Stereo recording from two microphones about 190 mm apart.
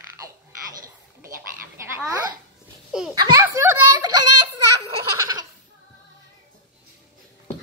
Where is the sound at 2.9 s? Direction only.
5° right (ahead or behind).